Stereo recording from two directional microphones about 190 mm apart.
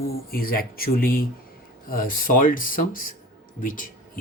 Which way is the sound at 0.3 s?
50° left (ahead or behind).